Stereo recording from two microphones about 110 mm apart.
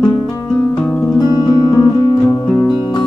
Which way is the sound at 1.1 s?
35° left (ahead or behind).